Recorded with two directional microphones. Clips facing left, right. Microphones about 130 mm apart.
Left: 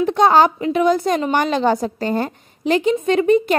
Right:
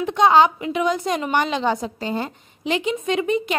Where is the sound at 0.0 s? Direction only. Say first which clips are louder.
Left 2 dB; 40° left (ahead or behind).